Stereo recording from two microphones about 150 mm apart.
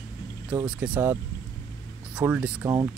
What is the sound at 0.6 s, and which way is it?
Speech, 10° right (ahead or behind).